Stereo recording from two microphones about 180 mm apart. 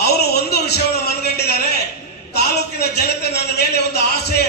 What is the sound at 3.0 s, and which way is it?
Speech, 65° left (ahead or behind).